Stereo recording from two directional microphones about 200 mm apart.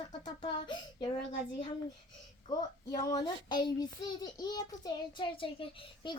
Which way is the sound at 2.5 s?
20° left (ahead or behind).